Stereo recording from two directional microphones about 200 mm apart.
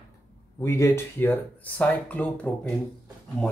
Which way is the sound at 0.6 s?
15° left (ahead or behind).